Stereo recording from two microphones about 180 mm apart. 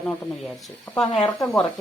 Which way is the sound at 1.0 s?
25° left (ahead or behind).